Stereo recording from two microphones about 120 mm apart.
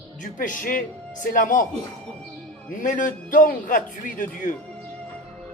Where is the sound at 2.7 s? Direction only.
90° left.